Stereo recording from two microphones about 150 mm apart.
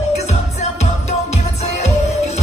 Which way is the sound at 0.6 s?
50° left (ahead or behind).